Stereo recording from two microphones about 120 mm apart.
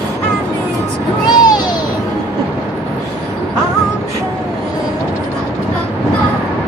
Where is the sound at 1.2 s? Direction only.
35° left (ahead or behind).